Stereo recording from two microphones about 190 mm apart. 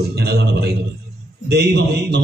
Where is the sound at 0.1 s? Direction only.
60° right (ahead or behind).